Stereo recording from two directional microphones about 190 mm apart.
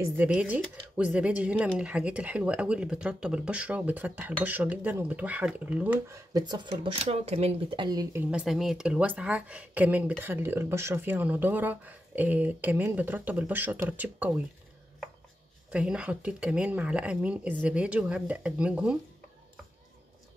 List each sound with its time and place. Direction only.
0.0 s speech: 10° right (ahead or behind)
15.7 s speech: 5° right (ahead or behind)